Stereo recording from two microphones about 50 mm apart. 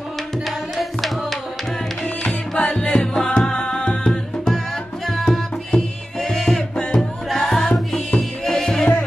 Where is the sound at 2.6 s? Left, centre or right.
Centre.